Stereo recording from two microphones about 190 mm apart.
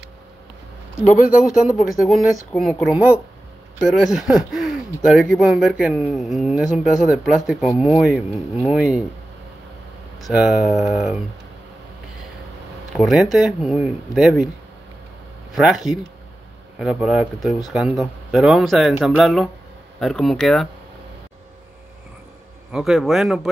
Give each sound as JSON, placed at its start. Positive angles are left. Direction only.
{"t": 1.0, "sound": "speech", "side_deg": 45}
{"t": 1.8, "sound": "speech", "side_deg": 0}
{"t": 10.2, "sound": "speech", "side_deg": -5}
{"t": 12.9, "sound": "speech", "side_deg": 0}
{"t": 15.5, "sound": "speech", "side_deg": 0}
{"t": 22.7, "sound": "speech", "side_deg": -5}